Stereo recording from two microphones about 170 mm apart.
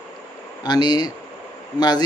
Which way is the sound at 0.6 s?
25° left (ahead or behind).